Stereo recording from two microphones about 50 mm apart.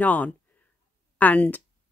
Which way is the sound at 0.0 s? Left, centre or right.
Left.